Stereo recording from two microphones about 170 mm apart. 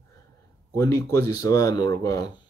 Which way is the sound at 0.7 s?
15° left (ahead or behind).